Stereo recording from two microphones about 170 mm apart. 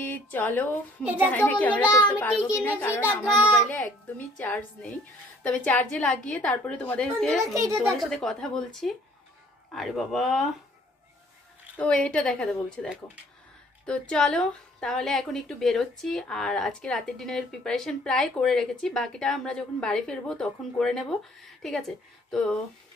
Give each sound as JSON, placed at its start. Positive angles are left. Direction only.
{"t": 0.0, "sound": "speech", "side_deg": 10}
{"t": 1.0, "sound": "a child's voice", "side_deg": -10}
{"t": 1.3, "sound": "a woman's voice", "side_deg": 10}
{"t": 2.3, "sound": "a woman's voice", "side_deg": -5}
{"t": 2.6, "sound": "a woman's voice", "side_deg": 10}
{"t": 4.4, "sound": "a woman's voice", "side_deg": 5}
{"t": 7.5, "sound": "a child's voice", "side_deg": -15}
{"t": 8.0, "sound": "a woman's voice", "side_deg": 5}
{"t": 11.8, "sound": "a woman's voice", "side_deg": 5}